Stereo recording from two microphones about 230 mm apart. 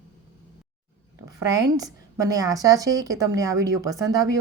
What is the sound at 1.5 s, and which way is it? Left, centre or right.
A woman's voice, centre.